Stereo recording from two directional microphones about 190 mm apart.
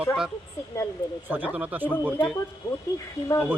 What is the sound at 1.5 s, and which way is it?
Speech, 10° right (ahead or behind).